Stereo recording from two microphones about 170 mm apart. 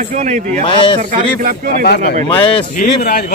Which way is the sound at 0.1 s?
45° right (ahead or behind).